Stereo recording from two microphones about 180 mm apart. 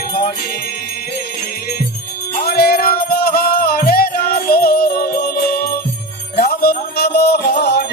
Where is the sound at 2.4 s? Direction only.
60° left (ahead or behind).